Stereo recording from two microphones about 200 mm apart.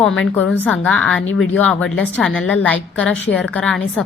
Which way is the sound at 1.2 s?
75° left (ahead or behind).